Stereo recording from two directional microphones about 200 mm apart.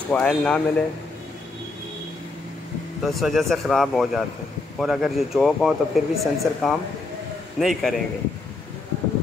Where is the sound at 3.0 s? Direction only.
Centre (ahead or behind).